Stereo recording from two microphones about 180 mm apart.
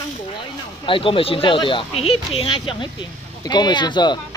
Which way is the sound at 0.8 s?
30° left (ahead or behind).